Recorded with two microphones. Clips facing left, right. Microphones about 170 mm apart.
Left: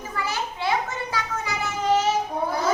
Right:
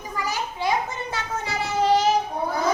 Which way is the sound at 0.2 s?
15° right (ahead or behind).